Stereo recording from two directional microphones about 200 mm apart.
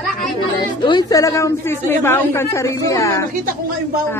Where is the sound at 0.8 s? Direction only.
20° left (ahead or behind).